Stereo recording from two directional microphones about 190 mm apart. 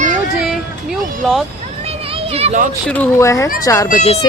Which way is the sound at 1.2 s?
Centre (ahead or behind).